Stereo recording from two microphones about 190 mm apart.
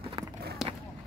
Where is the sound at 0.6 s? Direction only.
Centre (ahead or behind).